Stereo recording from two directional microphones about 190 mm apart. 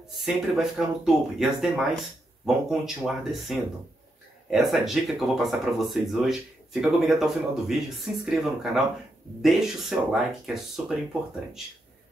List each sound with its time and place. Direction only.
0.1 s speech: centre (ahead or behind)